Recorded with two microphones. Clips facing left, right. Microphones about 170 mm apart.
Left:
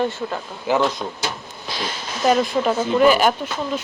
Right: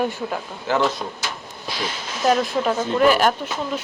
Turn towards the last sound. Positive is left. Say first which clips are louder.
# left 1 dB
turn(degrees=0)  # may be behind; listen again after turning